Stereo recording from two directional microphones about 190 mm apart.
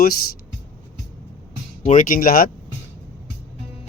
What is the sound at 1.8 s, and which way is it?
Speech, 45° left (ahead or behind).